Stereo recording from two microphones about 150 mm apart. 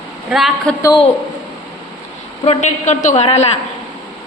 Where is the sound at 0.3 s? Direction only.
Centre (ahead or behind).